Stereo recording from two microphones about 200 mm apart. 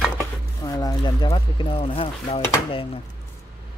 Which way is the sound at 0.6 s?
20° left (ahead or behind).